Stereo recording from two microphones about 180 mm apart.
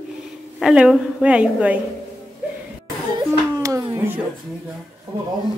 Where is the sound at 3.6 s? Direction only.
15° right (ahead or behind).